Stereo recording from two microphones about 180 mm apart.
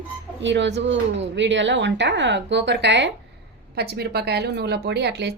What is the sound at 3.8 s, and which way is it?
A woman's voice, 65° right (ahead or behind).